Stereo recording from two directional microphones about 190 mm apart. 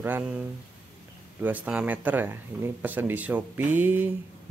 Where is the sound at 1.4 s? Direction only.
10° right (ahead or behind).